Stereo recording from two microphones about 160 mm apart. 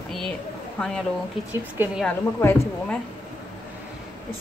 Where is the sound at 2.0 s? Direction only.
10° left (ahead or behind).